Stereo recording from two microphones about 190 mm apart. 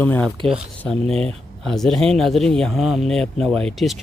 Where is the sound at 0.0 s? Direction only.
10° left (ahead or behind).